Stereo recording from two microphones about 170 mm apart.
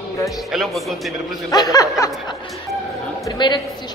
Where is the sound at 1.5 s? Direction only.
20° left (ahead or behind).